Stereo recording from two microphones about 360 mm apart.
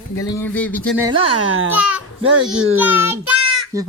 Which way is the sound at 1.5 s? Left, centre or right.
Right.